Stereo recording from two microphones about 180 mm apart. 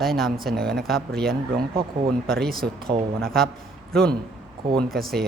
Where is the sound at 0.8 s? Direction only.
Centre (ahead or behind).